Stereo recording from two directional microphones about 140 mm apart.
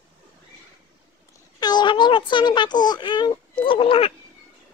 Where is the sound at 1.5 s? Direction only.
30° left (ahead or behind).